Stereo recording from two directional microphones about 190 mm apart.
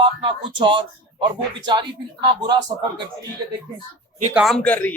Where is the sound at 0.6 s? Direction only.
25° right (ahead or behind).